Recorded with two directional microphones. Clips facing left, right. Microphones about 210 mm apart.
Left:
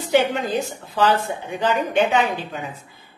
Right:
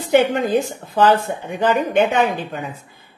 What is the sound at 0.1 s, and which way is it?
A woman's voice, 50° right (ahead or behind).